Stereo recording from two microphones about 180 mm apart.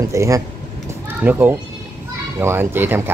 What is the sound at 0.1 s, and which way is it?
Speech, 15° right (ahead or behind).